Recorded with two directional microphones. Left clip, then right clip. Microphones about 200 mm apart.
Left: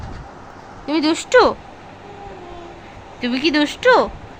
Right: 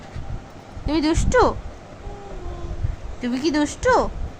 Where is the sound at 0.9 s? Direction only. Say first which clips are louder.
Left 3 dB; centre (ahead or behind).